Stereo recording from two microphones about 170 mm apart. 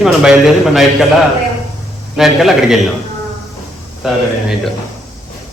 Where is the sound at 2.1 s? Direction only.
Centre (ahead or behind).